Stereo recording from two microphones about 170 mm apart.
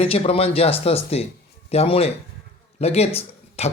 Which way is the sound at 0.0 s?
35° left (ahead or behind).